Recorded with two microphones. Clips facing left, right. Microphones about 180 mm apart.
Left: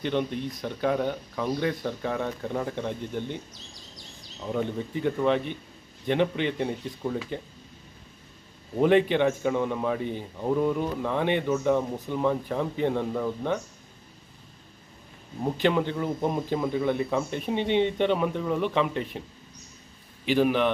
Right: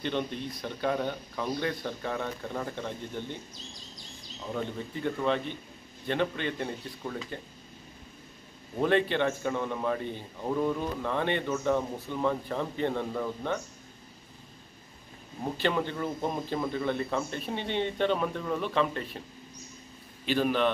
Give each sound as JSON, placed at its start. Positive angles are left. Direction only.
{"t": 0.6, "sound": "a man's voice", "side_deg": 10}
{"t": 4.5, "sound": "a man's voice", "side_deg": 10}
{"t": 8.7, "sound": "a man's voice", "side_deg": 15}
{"t": 15.5, "sound": "a man's voice", "side_deg": 15}
{"t": 20.2, "sound": "a man's voice", "side_deg": 15}